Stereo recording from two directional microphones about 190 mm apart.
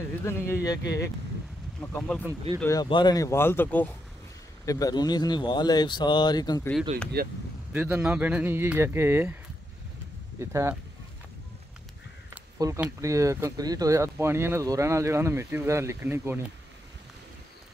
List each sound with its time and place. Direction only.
0.2 s speech: 15° left (ahead or behind)
1.8 s speech: 10° left (ahead or behind)
2.6 s speech: 20° left (ahead or behind)
7.2 s speech: 55° right (ahead or behind)
7.7 s speech: 10° right (ahead or behind)
10.4 s speech: 15° right (ahead or behind)
12.5 s speech: 15° right (ahead or behind)